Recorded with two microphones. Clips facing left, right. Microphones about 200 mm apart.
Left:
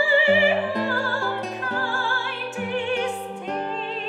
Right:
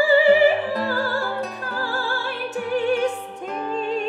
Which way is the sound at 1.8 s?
40° right (ahead or behind).